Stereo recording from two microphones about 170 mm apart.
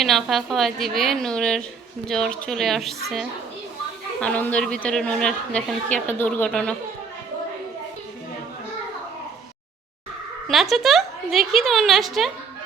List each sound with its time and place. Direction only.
0.0 s a woman's voice: centre (ahead or behind)
10.5 s a woman's voice: centre (ahead or behind)